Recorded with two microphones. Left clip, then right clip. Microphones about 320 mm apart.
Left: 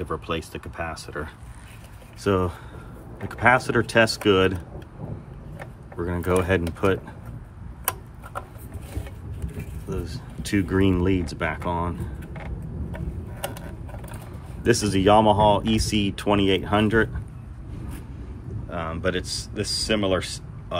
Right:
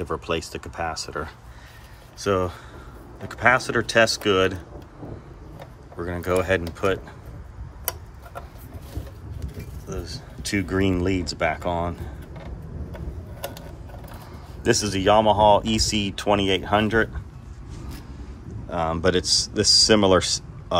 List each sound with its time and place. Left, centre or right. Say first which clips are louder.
0.0 s speech: right 2 dB; centre
5.9 s speech: even; centre
9.8 s speech: left 1 dB; centre
14.6 s speech: left 1 dB; centre
18.7 s speech: right 5 dB; centre